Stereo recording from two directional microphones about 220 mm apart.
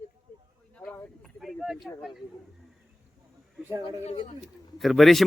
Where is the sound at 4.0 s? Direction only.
30° left (ahead or behind).